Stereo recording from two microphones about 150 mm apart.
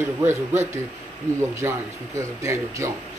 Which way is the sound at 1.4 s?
20° right (ahead or behind).